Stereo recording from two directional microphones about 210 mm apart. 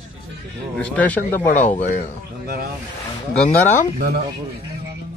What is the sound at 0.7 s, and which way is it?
Speech, 5° left (ahead or behind).